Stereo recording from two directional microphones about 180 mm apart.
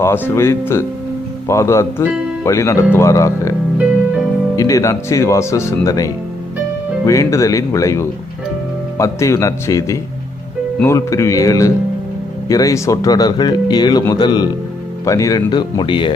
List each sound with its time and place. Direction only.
0.0 s speech: 15° left (ahead or behind)
4.5 s speech: 15° left (ahead or behind)